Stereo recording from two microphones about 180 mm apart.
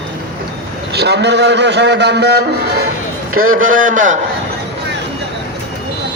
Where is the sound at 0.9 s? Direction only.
70° right (ahead or behind).